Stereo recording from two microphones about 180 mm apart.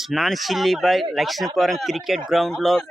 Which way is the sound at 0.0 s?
Centre (ahead or behind).